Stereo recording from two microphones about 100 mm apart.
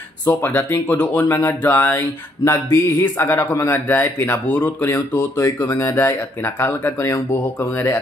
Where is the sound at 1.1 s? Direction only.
25° left (ahead or behind).